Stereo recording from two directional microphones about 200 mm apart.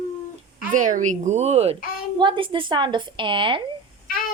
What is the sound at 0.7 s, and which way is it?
A woman's voice, 40° right (ahead or behind).